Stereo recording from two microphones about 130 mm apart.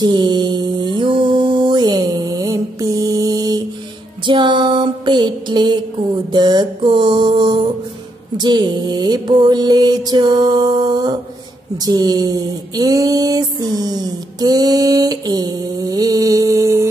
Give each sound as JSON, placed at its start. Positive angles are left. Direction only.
{"t": 0.0, "sound": "mantra", "side_deg": -35}
{"t": 4.3, "sound": "music", "side_deg": -35}
{"t": 6.3, "sound": "mantra", "side_deg": -35}
{"t": 8.4, "sound": "music", "side_deg": -35}
{"t": 11.8, "sound": "a sound", "side_deg": -30}